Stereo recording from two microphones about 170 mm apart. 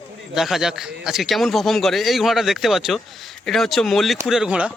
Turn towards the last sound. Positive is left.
turn(degrees=-5)  # may be behind; listen again after turning